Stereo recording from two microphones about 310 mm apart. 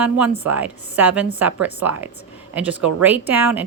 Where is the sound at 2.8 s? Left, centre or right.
Right.